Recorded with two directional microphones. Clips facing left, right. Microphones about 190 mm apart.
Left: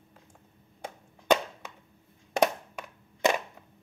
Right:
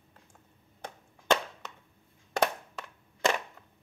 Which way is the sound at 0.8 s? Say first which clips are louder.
Left 2 dB; 10° left (ahead or behind).